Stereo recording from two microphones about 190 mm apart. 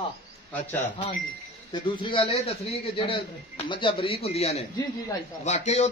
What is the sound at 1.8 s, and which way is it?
A man's voice, 25° left (ahead or behind).